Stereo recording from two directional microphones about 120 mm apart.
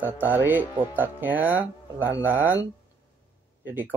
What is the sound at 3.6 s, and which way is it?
Speech, 15° right (ahead or behind).